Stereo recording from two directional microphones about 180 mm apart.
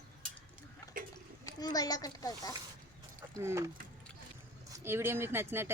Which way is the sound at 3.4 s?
15° right (ahead or behind).